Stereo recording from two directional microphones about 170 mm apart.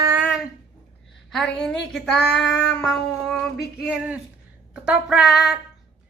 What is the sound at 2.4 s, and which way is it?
Child singing, 90° left.